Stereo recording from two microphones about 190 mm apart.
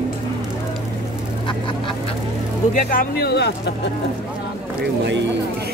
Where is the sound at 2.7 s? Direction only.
45° left (ahead or behind).